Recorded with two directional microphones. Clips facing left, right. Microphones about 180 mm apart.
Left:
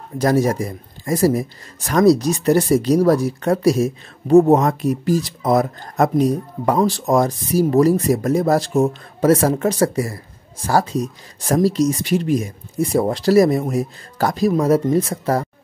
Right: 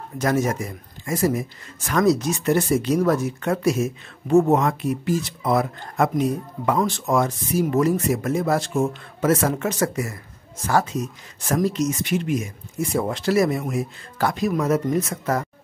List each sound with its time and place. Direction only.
0.2 s speech: 35° left (ahead or behind)